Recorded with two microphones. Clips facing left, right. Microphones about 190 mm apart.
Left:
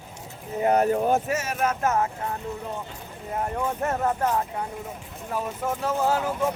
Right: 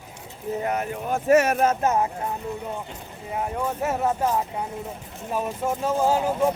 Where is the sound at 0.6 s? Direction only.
40° left (ahead or behind).